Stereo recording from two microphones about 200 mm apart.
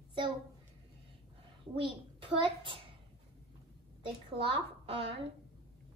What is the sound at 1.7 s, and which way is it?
Speech, 25° right (ahead or behind).